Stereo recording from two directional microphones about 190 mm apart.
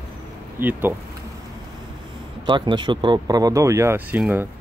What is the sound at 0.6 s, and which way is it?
Speech, 10° right (ahead or behind).